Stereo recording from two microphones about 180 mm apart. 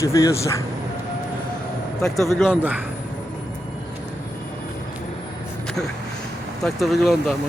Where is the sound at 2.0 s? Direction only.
Centre (ahead or behind).